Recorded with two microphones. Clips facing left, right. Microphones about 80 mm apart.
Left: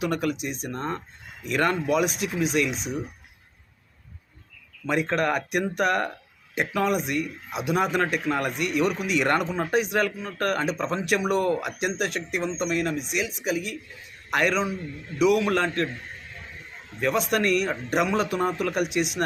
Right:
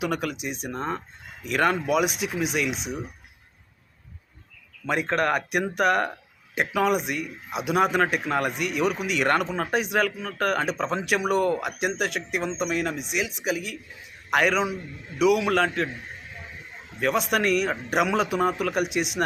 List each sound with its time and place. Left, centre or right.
0.0 s speech: centre
4.9 s a man's voice: centre
17.0 s speech: centre